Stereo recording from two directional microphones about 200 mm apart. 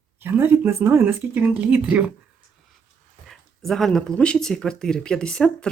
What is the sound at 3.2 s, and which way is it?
Speech, centre (ahead or behind).